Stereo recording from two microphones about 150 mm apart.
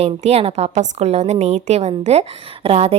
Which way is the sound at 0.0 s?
45° right (ahead or behind).